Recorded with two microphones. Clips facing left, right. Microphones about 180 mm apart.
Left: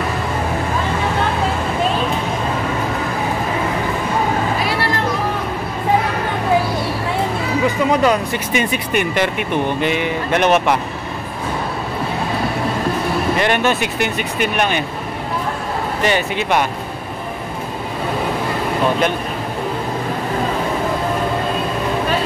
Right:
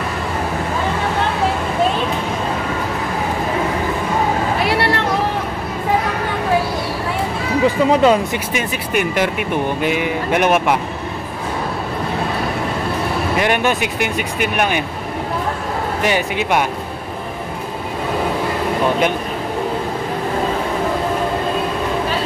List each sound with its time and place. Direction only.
4.6 s music: 65° right (ahead or behind)
7.6 s speech: 25° right (ahead or behind)
8.5 s speech: 5° right (ahead or behind)
13.4 s speech: 10° right (ahead or behind)
16.0 s speech: 10° right (ahead or behind)